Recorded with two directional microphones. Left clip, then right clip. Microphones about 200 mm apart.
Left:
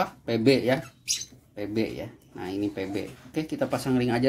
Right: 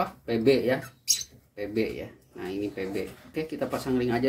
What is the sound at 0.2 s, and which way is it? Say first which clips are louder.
Speech: even; 45° left (ahead or behind).